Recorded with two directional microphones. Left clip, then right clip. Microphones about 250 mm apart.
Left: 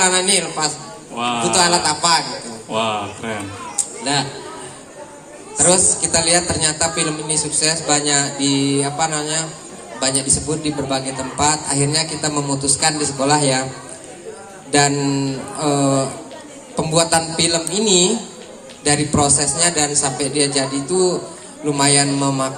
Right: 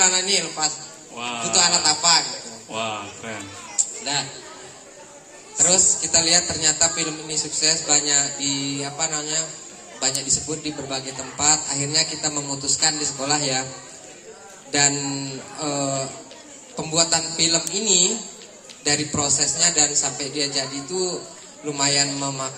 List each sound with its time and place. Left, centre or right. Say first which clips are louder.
0.0 s a woman's voice: left 4 dB; centre
5.5 s a woman's voice: left 4 dB; centre
14.7 s a woman's voice: left 6 dB; centre